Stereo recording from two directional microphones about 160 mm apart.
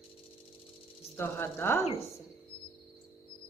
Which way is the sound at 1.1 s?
15° left (ahead or behind).